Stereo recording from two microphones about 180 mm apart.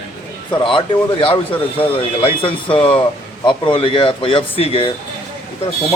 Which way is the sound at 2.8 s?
30° left (ahead or behind).